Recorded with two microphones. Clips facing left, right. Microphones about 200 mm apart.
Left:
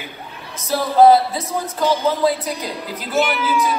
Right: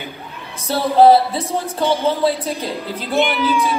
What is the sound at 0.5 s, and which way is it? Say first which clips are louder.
Speech: right 1 dB; 30° right (ahead or behind).